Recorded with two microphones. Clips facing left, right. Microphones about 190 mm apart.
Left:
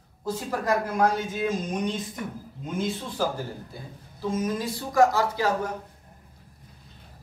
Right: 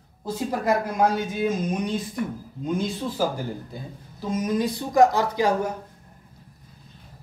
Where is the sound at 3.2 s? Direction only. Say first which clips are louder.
Right 1 dB; 10° right (ahead or behind).